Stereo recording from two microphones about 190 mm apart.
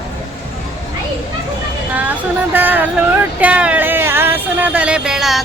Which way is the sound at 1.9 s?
10° right (ahead or behind).